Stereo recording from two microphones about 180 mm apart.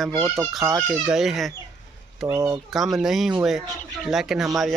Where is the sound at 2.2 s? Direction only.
20° right (ahead or behind).